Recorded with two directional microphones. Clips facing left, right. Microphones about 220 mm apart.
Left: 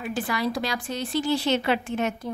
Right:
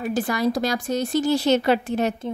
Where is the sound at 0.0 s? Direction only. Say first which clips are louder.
Right 5 dB; 45° right (ahead or behind).